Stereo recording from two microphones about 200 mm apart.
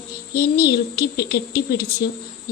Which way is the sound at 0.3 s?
50° left (ahead or behind).